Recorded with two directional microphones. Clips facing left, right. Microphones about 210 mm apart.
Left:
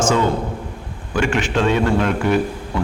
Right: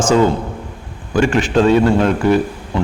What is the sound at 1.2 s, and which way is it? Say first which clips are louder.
A man's voice: right 5 dB; 35° right (ahead or behind).